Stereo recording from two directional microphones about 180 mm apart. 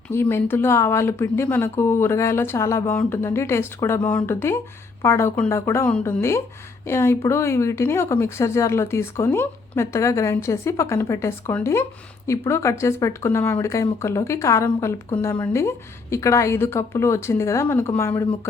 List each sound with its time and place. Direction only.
0.1 s speech: 15° left (ahead or behind)